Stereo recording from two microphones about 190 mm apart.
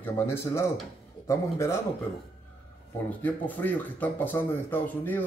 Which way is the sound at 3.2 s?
10° left (ahead or behind).